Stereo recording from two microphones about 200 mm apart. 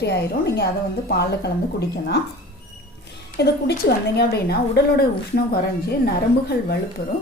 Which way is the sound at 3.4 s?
55° left (ahead or behind).